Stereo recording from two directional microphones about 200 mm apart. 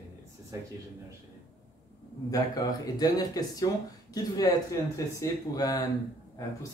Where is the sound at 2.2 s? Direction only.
20° left (ahead or behind).